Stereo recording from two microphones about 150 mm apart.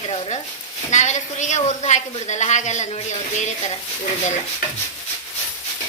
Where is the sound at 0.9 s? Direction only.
55° left (ahead or behind).